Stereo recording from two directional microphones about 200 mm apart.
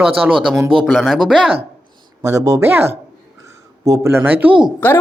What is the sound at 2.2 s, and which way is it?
Speech, 15° right (ahead or behind).